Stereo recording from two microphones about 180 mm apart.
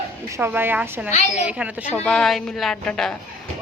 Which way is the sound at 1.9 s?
5° left (ahead or behind).